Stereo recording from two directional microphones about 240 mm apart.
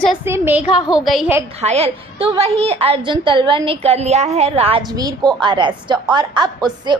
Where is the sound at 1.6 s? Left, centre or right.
Right.